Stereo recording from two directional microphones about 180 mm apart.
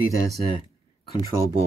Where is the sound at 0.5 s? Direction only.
25° left (ahead or behind).